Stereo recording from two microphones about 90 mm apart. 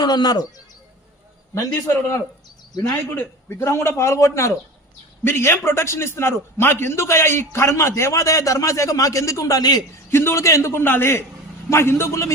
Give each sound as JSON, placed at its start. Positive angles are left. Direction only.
{"t": 0.0, "sound": "speech", "side_deg": 50}
{"t": 1.5, "sound": "a man's voice", "side_deg": 40}
{"t": 3.2, "sound": "a man's voice", "side_deg": 30}
{"t": 10.1, "sound": "a man's voice", "side_deg": 25}